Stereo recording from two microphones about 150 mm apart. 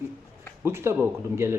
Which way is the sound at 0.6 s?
15° right (ahead or behind).